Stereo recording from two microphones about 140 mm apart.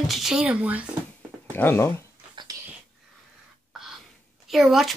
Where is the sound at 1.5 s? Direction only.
15° left (ahead or behind).